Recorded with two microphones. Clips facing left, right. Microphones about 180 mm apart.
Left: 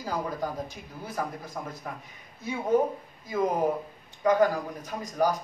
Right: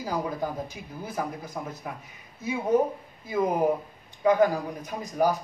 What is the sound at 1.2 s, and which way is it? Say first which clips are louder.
Speech: right 1 dB; 15° right (ahead or behind).